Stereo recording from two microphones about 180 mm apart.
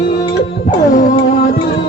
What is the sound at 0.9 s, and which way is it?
Music, 50° left (ahead or behind).